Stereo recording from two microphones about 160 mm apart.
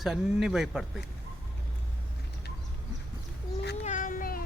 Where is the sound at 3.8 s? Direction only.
55° left (ahead or behind).